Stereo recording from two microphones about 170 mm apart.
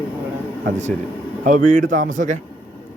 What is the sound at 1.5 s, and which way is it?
Speech, 50° right (ahead or behind).